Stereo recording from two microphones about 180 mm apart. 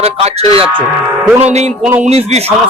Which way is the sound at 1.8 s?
10° right (ahead or behind).